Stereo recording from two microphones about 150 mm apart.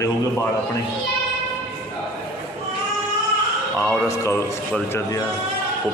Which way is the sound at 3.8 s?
20° left (ahead or behind).